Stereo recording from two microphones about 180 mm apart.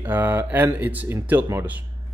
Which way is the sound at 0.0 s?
10° right (ahead or behind).